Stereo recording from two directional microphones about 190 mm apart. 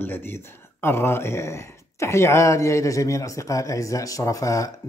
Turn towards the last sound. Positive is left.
turn(degrees=15)  # may be behind; listen again after turning